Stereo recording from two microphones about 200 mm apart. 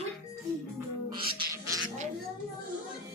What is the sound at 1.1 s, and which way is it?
Music, 25° right (ahead or behind).